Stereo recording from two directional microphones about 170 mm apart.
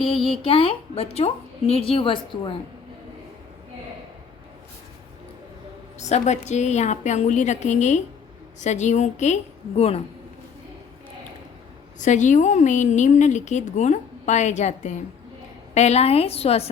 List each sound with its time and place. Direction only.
0.4 s a woman's voice: 35° left (ahead or behind)
6.0 s a woman's voice: 40° left (ahead or behind)
11.9 s a woman's voice: 45° left (ahead or behind)